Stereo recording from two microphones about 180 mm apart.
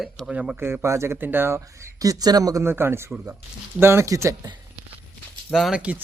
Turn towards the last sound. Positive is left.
turn(degrees=-5)  # may be behind; listen again after turning